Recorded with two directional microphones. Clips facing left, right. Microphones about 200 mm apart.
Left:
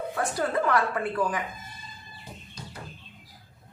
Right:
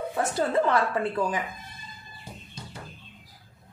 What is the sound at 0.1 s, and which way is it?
A woman's voice, 25° right (ahead or behind).